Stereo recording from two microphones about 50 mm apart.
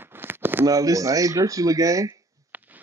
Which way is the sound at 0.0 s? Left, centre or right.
Right.